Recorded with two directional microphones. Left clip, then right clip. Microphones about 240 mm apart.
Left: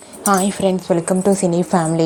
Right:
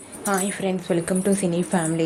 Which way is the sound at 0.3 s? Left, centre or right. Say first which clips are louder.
Left 8 dB; left.